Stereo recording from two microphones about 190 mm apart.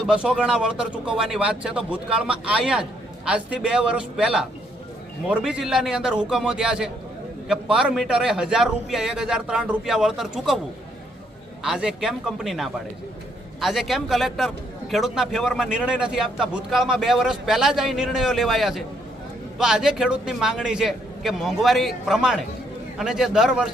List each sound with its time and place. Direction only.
0.0 s a man's voice: 5° right (ahead or behind)
11.6 s a man's voice: 5° right (ahead or behind)